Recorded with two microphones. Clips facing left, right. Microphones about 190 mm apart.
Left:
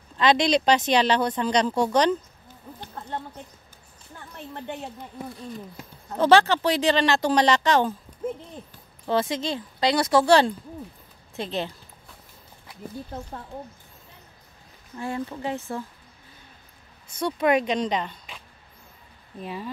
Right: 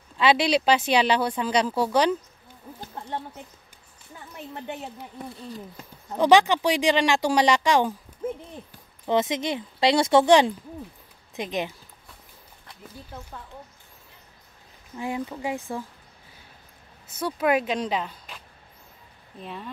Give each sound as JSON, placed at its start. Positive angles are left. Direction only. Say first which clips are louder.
{"t": 0.2, "sound": "speech", "louder": "left 1 dB", "side_deg": -10}
{"t": 4.1, "sound": "speech", "louder": "even", "side_deg": -10}
{"t": 9.0, "sound": "speech", "louder": "right 1 dB", "side_deg": -20}
{"t": 15.0, "sound": "speech", "louder": "even", "side_deg": -15}
{"t": 17.1, "sound": "speech", "louder": "left 1 dB", "side_deg": -5}
{"t": 19.4, "sound": "speech", "louder": "left 4 dB", "side_deg": 5}